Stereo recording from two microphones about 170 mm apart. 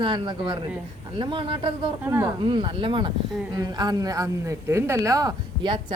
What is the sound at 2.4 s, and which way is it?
A woman's voice, 30° right (ahead or behind).